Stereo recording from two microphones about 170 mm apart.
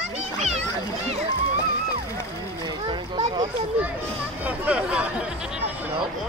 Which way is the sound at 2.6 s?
25° right (ahead or behind).